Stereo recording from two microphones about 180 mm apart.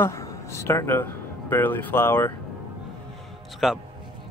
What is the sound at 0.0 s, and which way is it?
Speech, 15° left (ahead or behind).